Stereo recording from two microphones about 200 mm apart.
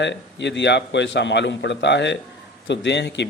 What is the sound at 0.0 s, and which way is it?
A man's voice, 60° left (ahead or behind).